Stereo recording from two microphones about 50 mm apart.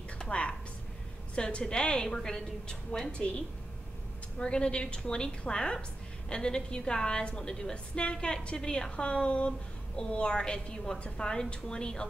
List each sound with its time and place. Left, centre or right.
0.2 s a sound: left
1.3 s a woman's voice: centre
4.4 s a woman's voice: centre